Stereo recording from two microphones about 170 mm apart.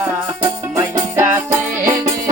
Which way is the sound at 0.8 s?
15° right (ahead or behind).